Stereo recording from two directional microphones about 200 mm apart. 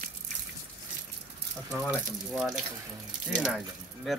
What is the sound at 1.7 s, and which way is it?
Speech, centre (ahead or behind).